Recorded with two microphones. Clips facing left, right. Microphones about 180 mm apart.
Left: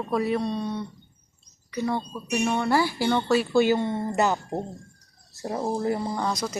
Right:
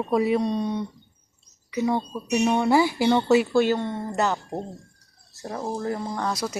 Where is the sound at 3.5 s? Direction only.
5° left (ahead or behind).